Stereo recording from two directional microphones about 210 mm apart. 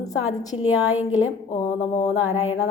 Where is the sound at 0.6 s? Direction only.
80° left.